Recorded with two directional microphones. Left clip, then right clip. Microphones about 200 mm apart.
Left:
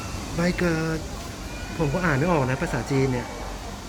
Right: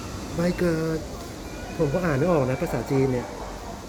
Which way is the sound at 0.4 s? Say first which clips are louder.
Even; centre (ahead or behind).